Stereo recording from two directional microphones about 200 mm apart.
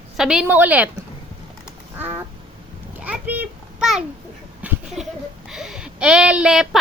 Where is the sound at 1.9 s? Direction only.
10° right (ahead or behind).